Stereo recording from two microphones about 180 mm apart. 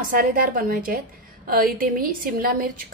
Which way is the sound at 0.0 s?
50° right (ahead or behind).